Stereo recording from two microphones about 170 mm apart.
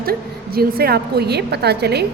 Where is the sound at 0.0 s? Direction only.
65° right (ahead or behind).